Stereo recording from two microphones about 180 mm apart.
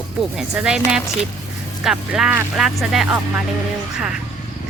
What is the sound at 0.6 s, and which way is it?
Speech, 5° right (ahead or behind).